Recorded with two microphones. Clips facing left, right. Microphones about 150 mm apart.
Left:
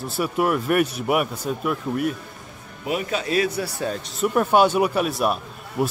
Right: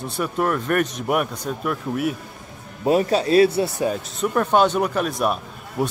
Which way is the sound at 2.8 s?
35° right (ahead or behind).